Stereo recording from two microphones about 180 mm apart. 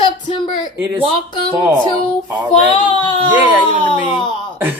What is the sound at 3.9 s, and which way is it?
Speech, 30° left (ahead or behind).